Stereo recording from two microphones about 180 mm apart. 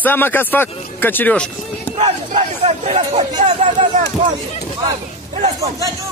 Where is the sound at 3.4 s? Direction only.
40° right (ahead or behind).